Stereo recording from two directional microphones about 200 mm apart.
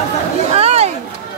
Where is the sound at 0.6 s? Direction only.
30° right (ahead or behind).